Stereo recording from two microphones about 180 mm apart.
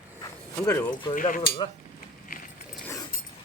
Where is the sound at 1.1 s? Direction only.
50° left (ahead or behind).